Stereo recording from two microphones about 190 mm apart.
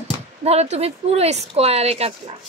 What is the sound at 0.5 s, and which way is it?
A woman's voice, 35° right (ahead or behind).